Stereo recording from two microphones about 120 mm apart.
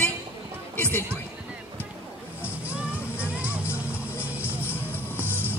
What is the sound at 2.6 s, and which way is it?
Music, 10° right (ahead or behind).